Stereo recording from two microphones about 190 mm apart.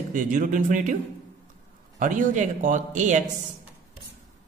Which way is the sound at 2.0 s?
40° right (ahead or behind).